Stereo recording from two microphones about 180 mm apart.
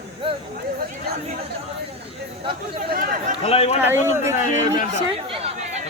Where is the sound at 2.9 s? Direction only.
50° right (ahead or behind).